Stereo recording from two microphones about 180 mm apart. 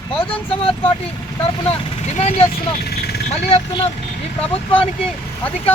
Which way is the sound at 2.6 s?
60° left (ahead or behind).